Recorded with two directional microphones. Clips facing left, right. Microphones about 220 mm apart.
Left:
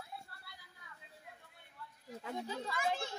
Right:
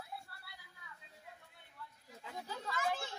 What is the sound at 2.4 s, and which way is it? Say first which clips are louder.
Speech: left 1 dB; 25° left (ahead or behind).